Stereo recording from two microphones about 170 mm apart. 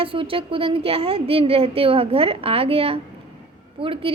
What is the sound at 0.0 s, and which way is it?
A woman's voice, 30° right (ahead or behind).